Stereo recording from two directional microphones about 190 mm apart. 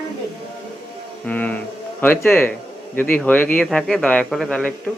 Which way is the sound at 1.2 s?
10° left (ahead or behind).